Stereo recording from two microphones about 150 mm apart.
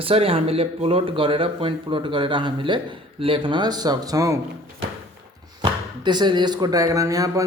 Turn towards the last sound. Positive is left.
turn(degrees=-20)  # may be behind; listen again after turning